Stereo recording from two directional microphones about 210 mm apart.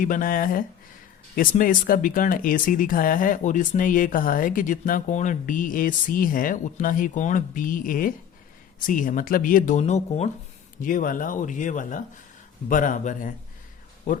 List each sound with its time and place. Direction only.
0.0 s speech: 40° left (ahead or behind)